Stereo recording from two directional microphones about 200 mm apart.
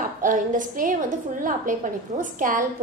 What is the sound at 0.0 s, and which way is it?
A woman's voice, 40° right (ahead or behind).